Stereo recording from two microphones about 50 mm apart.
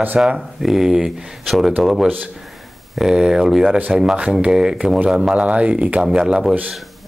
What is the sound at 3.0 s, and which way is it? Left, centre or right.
Speech, centre.